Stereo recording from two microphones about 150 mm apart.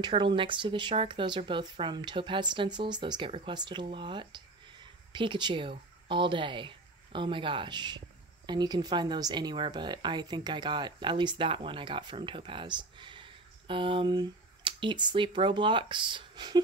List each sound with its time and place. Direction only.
0.0 s speech: 30° right (ahead or behind)